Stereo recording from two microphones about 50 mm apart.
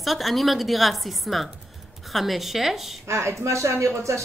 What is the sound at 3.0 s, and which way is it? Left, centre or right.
Speech, right.